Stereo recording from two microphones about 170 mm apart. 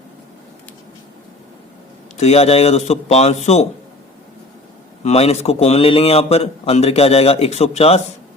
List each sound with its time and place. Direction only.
2.1 s a man's voice: 40° left (ahead or behind)
5.0 s a man's voice: 40° left (ahead or behind)